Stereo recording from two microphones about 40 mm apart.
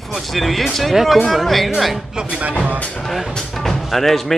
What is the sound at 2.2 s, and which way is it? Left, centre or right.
Music, right.